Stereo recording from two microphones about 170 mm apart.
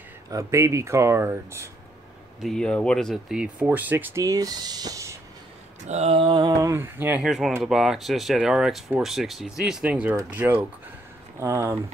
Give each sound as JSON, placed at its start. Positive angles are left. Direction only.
{"t": 0.3, "sound": "speech", "side_deg": -20}
{"t": 2.4, "sound": "speech", "side_deg": 5}
{"t": 5.9, "sound": "speech", "side_deg": -40}